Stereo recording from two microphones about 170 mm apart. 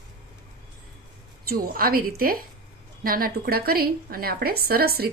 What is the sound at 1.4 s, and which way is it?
A woman's voice, 60° right (ahead or behind).